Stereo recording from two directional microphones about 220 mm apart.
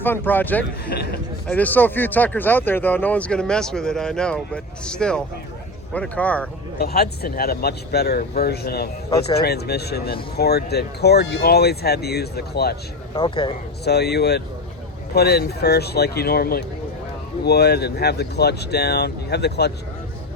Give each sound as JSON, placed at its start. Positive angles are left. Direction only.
{"t": 0.0, "sound": "speech", "side_deg": 10}
{"t": 0.9, "sound": "a sound", "side_deg": 45}
{"t": 1.5, "sound": "speech", "side_deg": 5}
{"t": 6.7, "sound": "speech", "side_deg": 45}
{"t": 9.0, "sound": "speech", "side_deg": 20}
{"t": 9.4, "sound": "speech", "side_deg": 45}
{"t": 13.1, "sound": "speech", "side_deg": 25}
{"t": 13.8, "sound": "speech", "side_deg": 50}